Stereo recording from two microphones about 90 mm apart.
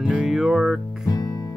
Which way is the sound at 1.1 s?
45° left (ahead or behind).